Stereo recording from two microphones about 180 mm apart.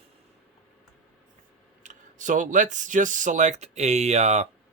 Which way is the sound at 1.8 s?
45° right (ahead or behind).